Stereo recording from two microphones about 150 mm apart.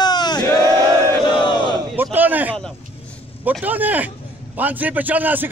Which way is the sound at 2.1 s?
10° right (ahead or behind).